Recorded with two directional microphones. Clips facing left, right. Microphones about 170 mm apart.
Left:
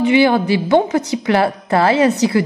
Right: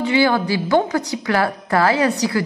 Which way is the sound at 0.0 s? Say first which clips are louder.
Left 4 dB; 20° left (ahead or behind).